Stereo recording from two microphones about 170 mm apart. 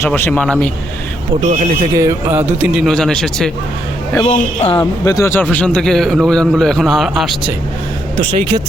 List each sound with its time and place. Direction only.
0.1 s a man's voice: 5° left (ahead or behind)
1.4 s speech: 40° right (ahead or behind)
2.0 s music: 15° right (ahead or behind)
2.8 s a man's voice: centre (ahead or behind)
4.3 s speech: 35° left (ahead or behind)
4.8 s a man's voice: 20° left (ahead or behind); by 7.3 s centre (ahead or behind)